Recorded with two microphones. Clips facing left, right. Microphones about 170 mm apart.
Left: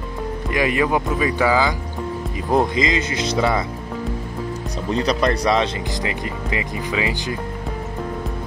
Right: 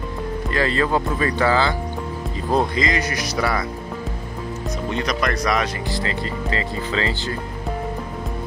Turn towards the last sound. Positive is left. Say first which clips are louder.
# left 1 dB
turn(degrees=15)  # may be behind; listen again after turning